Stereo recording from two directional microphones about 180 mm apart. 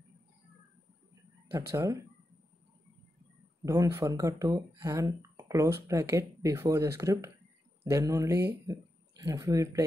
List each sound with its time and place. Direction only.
1.5 s speech: 15° right (ahead or behind)
3.6 s speech: 15° right (ahead or behind)